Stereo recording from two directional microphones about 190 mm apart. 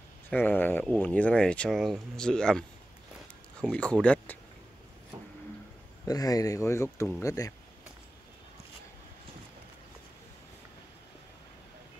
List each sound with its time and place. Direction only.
0.3 s speech: 10° left (ahead or behind)
3.6 s speech: 5° left (ahead or behind)
6.0 s speech: 20° left (ahead or behind)